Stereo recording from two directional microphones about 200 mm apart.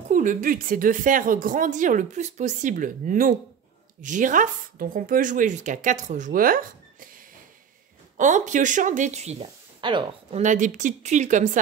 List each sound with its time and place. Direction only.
0.1 s a woman's voice: 40° right (ahead or behind)
8.2 s a woman's voice: 40° right (ahead or behind)
10.4 s a woman's voice: 40° right (ahead or behind)